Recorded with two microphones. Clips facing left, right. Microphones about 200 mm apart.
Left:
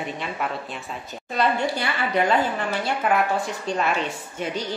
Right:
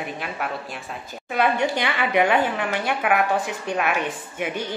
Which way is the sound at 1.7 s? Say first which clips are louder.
Right 2 dB; 80° right.